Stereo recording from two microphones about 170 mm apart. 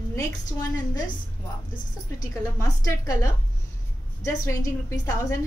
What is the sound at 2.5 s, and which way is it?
A woman's voice, 20° left (ahead or behind).